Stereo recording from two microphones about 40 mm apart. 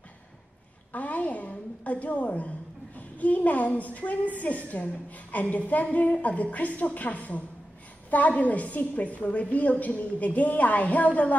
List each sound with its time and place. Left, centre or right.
0.9 s a woman's voice: left